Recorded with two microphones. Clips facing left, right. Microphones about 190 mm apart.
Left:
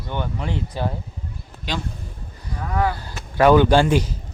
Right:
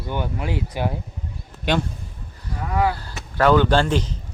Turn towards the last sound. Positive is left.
turn(degrees=10)  # may be behind; listen again after turning